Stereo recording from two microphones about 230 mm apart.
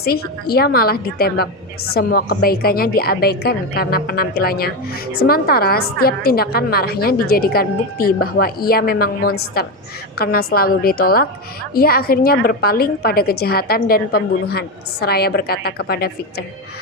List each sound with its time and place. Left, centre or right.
0.0 s a woman's voice: left